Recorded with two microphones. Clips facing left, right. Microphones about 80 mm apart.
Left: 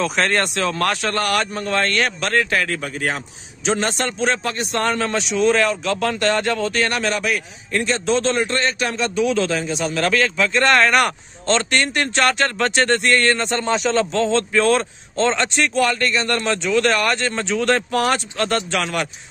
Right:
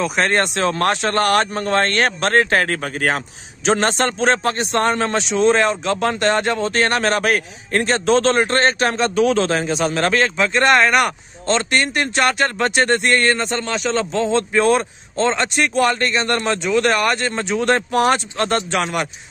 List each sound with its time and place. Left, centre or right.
0.0 s a man's voice: centre
6.8 s a man's voice: right; by 13.3 s centre
13.3 s a man's voice: centre
15.8 s speech: right